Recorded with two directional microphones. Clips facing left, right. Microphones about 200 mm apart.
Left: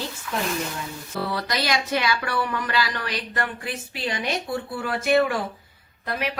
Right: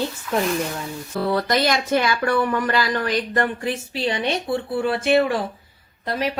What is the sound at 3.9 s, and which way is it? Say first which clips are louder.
Speech: right 3 dB; 25° right (ahead or behind).